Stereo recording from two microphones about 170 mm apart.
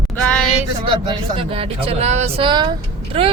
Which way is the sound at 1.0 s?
30° right (ahead or behind).